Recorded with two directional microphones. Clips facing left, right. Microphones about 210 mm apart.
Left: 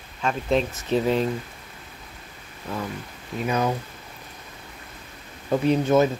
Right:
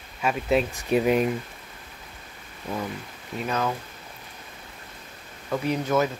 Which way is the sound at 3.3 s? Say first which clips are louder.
Left 3 dB; 10° left (ahead or behind).